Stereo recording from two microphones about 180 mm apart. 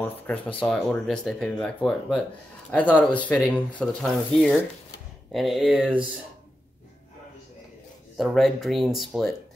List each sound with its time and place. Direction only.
0.6 s speech: 5° left (ahead or behind)
8.2 s speech: centre (ahead or behind)